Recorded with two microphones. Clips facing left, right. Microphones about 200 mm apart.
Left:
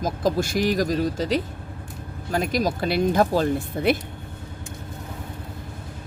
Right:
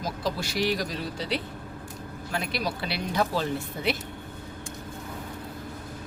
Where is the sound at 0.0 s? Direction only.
50° left (ahead or behind).